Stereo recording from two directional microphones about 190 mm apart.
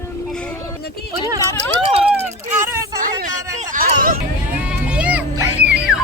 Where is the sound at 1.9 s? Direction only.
30° right (ahead or behind).